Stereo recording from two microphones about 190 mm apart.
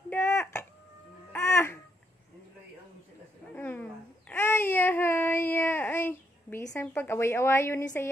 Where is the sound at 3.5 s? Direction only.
10° left (ahead or behind).